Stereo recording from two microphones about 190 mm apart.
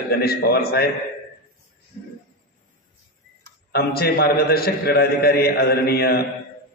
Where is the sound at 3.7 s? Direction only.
55° left (ahead or behind).